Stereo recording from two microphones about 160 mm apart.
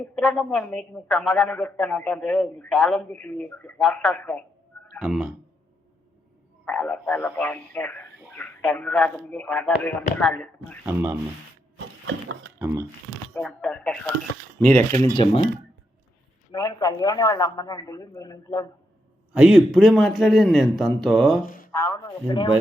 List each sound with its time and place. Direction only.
0.0 s a man's voice: centre (ahead or behind)
4.9 s speech: 5° right (ahead or behind)
6.7 s speech: 5° left (ahead or behind)
10.8 s speech: 15° right (ahead or behind)
12.5 s speech: 15° right (ahead or behind)
13.3 s a man's voice: 5° left (ahead or behind)
15.1 s a man's voice: 30° left (ahead or behind)
16.5 s a man's voice: 25° left (ahead or behind)
19.3 s a man's voice: 5° right (ahead or behind)
21.4 s speech: 60° left (ahead or behind)
21.7 s speech: 15° left (ahead or behind)